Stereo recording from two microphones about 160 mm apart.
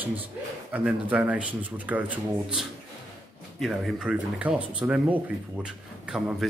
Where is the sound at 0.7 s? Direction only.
5° right (ahead or behind).